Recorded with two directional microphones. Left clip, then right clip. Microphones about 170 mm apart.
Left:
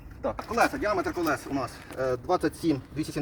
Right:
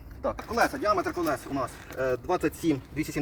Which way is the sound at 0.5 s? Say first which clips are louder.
Even; 15° right (ahead or behind).